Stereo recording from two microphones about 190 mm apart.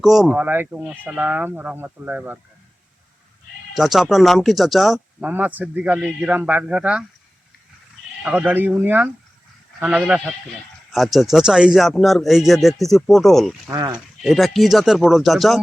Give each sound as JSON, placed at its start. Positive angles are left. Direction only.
{"t": 0.0, "sound": "speech", "side_deg": 0}
{"t": 3.8, "sound": "speech", "side_deg": 0}
{"t": 8.2, "sound": "speech", "side_deg": -10}
{"t": 13.7, "sound": "speech", "side_deg": -20}
{"t": 14.2, "sound": "speech", "side_deg": 0}